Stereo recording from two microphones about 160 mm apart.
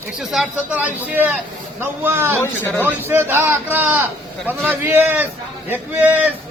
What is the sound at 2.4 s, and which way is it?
Speech, 15° left (ahead or behind).